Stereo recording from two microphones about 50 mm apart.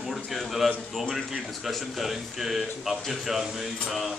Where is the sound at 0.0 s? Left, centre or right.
Centre.